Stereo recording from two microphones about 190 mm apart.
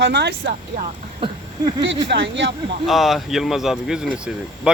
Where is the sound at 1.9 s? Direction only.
70° right (ahead or behind).